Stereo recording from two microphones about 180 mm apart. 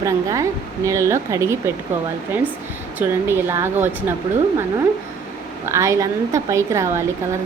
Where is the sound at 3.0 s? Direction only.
10° right (ahead or behind).